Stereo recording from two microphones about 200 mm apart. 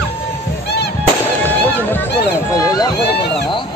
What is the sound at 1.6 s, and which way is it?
Run, 10° left (ahead or behind).